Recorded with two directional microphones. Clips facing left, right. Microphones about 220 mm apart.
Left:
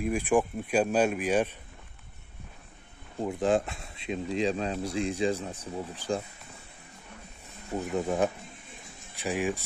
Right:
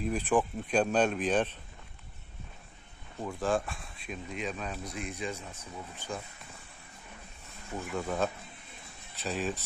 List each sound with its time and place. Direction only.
0.0 s speech: 10° left (ahead or behind)
3.2 s speech: 20° left (ahead or behind)
7.9 s speech: 20° left (ahead or behind)